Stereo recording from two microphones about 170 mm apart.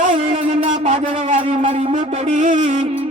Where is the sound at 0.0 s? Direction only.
40° right (ahead or behind).